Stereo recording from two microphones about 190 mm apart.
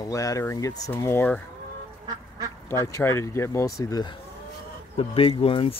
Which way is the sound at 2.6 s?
15° left (ahead or behind).